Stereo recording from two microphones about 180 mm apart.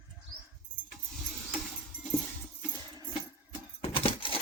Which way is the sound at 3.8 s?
30° left (ahead or behind).